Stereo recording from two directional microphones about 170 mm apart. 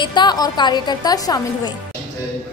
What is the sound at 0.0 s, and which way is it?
A woman's voice, 25° left (ahead or behind).